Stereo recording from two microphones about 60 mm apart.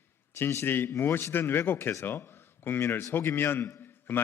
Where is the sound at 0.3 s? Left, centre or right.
Left.